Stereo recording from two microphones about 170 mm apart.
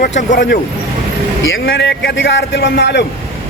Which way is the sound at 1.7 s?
90° left.